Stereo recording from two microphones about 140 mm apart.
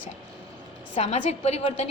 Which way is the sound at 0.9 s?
50° left (ahead or behind).